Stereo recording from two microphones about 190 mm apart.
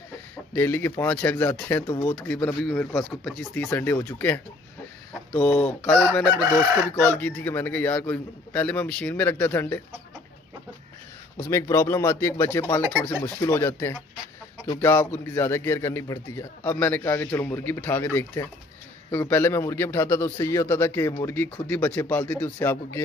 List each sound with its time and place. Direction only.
0.6 s a man's voice: 10° left (ahead or behind)
5.9 s chicken: 5° left (ahead or behind)
7.0 s a man's voice: 10° left (ahead or behind)
11.3 s a man's voice: 15° left (ahead or behind)